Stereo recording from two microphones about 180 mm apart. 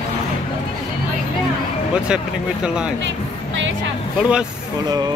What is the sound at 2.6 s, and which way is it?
Speech, 5° right (ahead or behind).